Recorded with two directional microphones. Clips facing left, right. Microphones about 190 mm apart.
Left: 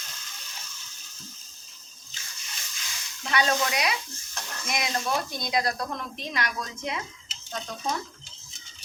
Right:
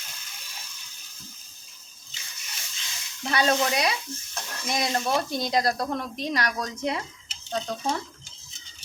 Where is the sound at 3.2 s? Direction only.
35° right (ahead or behind).